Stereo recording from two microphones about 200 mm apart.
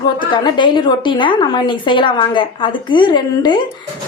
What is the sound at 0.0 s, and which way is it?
A woman's voice, 20° left (ahead or behind).